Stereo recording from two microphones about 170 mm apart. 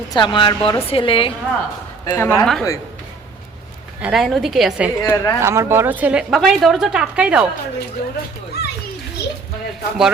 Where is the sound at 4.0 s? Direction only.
5° right (ahead or behind).